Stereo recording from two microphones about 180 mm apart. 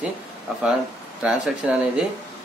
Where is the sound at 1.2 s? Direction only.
5° right (ahead or behind).